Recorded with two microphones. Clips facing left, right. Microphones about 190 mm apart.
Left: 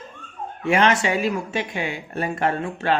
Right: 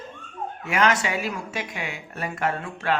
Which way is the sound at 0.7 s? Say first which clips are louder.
Left 4 dB; 25° left (ahead or behind).